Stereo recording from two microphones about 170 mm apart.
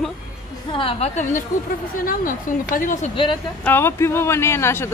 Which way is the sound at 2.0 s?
55° left (ahead or behind).